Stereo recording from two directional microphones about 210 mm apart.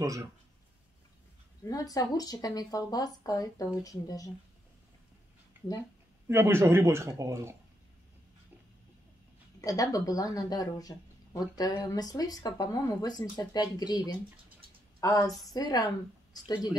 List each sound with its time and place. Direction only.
0.0 s speech: 15° right (ahead or behind)
1.7 s speech: 15° left (ahead or behind)
6.2 s speech: 10° right (ahead or behind)
9.6 s a woman's voice: 15° left (ahead or behind)